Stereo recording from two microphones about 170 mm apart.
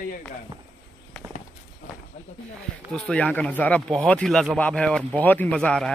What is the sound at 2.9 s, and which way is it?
Speech, 5° left (ahead or behind).